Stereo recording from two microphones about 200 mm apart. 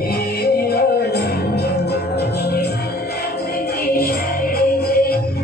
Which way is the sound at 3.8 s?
50° left (ahead or behind).